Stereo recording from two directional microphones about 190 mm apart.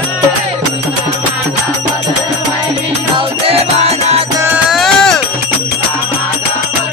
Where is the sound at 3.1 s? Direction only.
30° right (ahead or behind).